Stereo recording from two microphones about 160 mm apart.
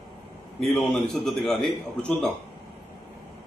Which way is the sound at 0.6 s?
Centre (ahead or behind).